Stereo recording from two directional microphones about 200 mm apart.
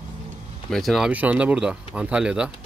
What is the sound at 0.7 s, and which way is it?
Speech, centre (ahead or behind).